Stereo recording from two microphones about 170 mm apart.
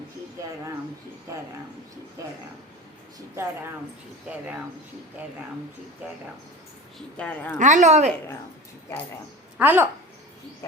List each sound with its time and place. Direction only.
7.2 s speech: 10° left (ahead or behind)
7.6 s a woman's voice: 45° right (ahead or behind)
9.6 s a child's voice: 10° right (ahead or behind)